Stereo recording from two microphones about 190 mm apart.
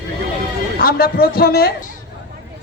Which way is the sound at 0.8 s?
55° left (ahead or behind).